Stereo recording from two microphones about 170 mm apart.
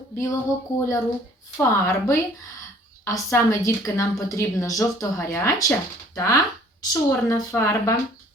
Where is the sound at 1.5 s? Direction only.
15° left (ahead or behind).